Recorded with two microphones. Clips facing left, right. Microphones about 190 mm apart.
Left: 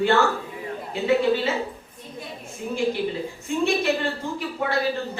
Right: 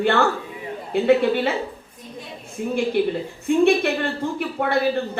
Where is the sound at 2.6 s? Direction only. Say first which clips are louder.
Right 4 dB; 55° right (ahead or behind).